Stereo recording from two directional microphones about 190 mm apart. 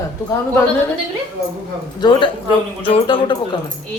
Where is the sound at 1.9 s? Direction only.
25° left (ahead or behind).